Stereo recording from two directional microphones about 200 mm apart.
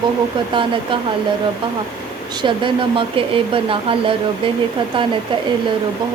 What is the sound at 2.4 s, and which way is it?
Speech, 25° right (ahead or behind).